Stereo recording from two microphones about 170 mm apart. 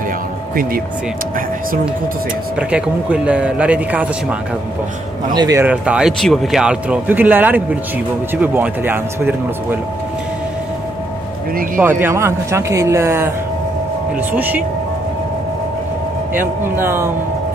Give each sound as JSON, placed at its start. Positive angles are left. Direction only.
{"t": 2.5, "sound": "speech", "side_deg": -5}
{"t": 5.3, "sound": "speech", "side_deg": -25}
{"t": 5.6, "sound": "speech", "side_deg": -5}
{"t": 12.0, "sound": "speech", "side_deg": -15}
{"t": 14.3, "sound": "speech", "side_deg": -10}
{"t": 16.3, "sound": "speech", "side_deg": -15}